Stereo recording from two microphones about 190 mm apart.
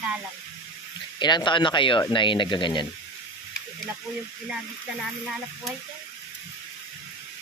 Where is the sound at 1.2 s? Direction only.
25° left (ahead or behind).